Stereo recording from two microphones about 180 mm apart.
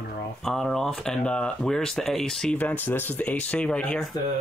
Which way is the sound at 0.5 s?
Centre (ahead or behind).